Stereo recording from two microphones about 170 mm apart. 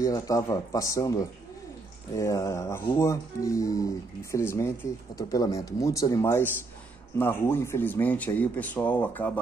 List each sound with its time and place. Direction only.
0.0 s speech: 20° left (ahead or behind)